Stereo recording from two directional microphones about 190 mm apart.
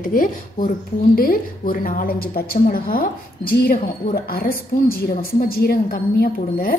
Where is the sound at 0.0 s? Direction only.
45° left (ahead or behind).